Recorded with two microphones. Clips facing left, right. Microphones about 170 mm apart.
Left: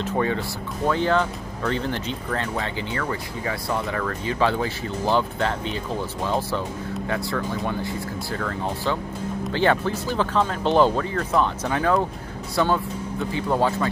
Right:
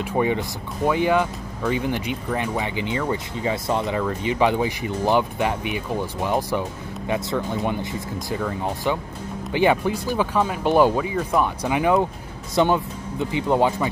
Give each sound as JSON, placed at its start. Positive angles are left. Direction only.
{"t": 0.0, "sound": "speech", "side_deg": -15}